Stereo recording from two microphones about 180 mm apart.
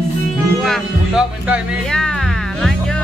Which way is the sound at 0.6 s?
Centre (ahead or behind).